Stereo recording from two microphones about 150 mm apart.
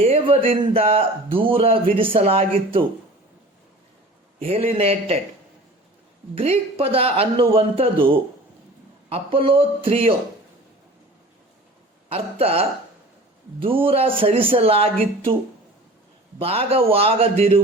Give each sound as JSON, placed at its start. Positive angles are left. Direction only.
{"t": 0.0, "sound": "speech", "side_deg": -40}
{"t": 4.4, "sound": "speech", "side_deg": -40}
{"t": 6.3, "sound": "speech", "side_deg": -40}
{"t": 12.0, "sound": "speech", "side_deg": -40}
{"t": 16.4, "sound": "speech", "side_deg": -40}